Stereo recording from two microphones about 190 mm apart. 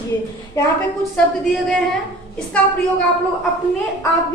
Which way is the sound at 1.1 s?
Centre (ahead or behind).